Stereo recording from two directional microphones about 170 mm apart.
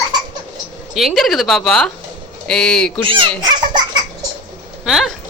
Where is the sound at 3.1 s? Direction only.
30° right (ahead or behind).